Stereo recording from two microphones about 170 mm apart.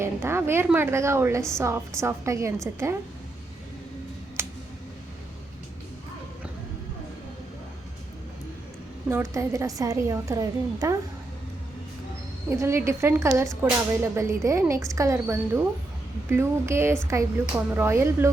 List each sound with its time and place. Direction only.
0.0 s a woman's voice: 15° right (ahead or behind)
4.4 s a sound: 15° right (ahead or behind)
9.0 s a woman's voice: 15° right (ahead or behind)
12.5 s a woman's voice: 15° right (ahead or behind)